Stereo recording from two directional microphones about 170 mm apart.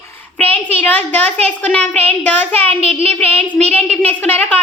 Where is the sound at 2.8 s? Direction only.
35° right (ahead or behind).